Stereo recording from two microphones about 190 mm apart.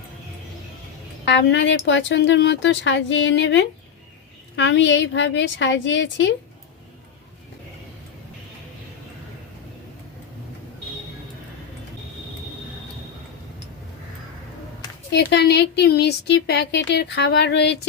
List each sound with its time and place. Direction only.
1.3 s speech: 70° left (ahead or behind)
15.1 s speech: 60° left (ahead or behind)